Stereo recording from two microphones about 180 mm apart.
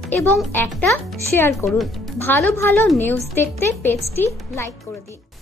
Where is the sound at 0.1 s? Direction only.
10° left (ahead or behind).